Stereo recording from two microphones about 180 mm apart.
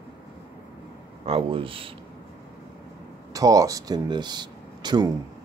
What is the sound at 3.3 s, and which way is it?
Speech, 20° right (ahead or behind).